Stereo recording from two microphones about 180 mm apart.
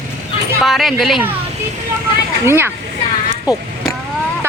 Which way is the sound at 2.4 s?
15° right (ahead or behind).